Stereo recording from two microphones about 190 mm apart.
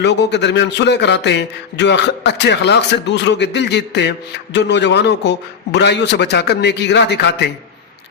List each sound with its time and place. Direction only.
0.0 s a man's voice: 65° left (ahead or behind)